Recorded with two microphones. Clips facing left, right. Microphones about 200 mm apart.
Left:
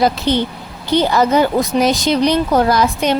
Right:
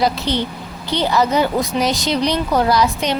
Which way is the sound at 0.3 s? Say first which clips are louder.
Left 4 dB; 50° left (ahead or behind).